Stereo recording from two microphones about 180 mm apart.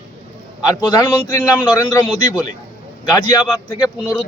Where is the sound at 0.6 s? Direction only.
25° left (ahead or behind).